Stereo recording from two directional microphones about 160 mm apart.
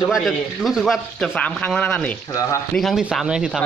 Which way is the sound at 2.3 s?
20° left (ahead or behind).